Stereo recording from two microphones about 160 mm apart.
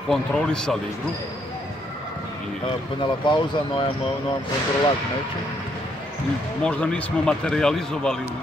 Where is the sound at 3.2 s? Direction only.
30° left (ahead or behind).